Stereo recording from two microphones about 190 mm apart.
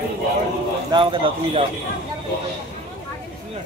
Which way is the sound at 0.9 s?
25° right (ahead or behind).